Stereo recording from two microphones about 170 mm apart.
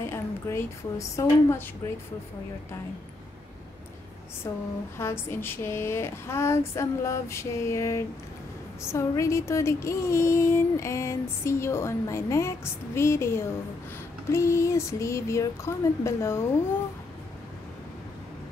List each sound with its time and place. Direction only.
0.0 s a woman's voice: 15° left (ahead or behind)
4.4 s female singing: 20° left (ahead or behind)